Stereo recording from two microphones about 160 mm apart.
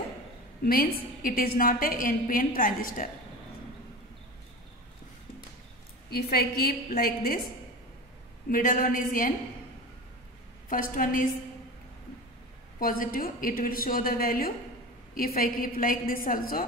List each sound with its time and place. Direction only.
0.7 s a woman's voice: 65° left (ahead or behind)
6.0 s a woman's voice: 75° left (ahead or behind)
8.5 s a woman's voice: 60° left (ahead or behind)
10.7 s a woman's voice: 60° left (ahead or behind)
12.7 s a woman's voice: 60° left (ahead or behind)